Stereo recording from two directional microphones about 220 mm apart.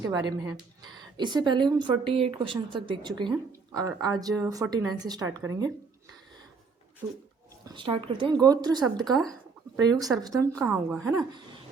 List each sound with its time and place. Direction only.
0.0 s a woman's voice: 15° right (ahead or behind)
7.6 s a woman's voice: 20° right (ahead or behind)
9.0 s a woman's voice: centre (ahead or behind)
9.7 s a woman's voice: 15° right (ahead or behind)
10.5 s a woman's voice: centre (ahead or behind)